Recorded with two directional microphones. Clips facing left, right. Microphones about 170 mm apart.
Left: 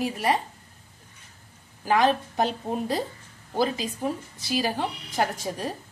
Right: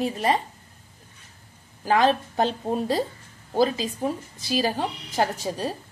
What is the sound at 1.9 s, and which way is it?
A woman's voice, 25° right (ahead or behind).